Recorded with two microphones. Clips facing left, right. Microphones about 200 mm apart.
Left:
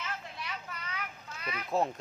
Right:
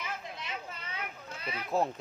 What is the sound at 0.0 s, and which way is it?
Children playing, 20° right (ahead or behind).